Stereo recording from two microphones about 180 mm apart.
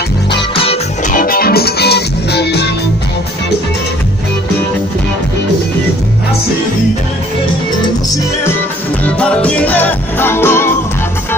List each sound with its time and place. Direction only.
0.6 s music: 35° left (ahead or behind)
1.1 s music: 55° left (ahead or behind)
9.0 s music: 10° left (ahead or behind)